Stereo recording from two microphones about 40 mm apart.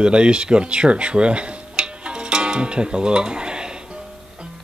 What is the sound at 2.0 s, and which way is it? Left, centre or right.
Music, right.